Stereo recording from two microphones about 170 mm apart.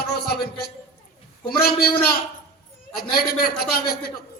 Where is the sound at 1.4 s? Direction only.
65° left (ahead or behind).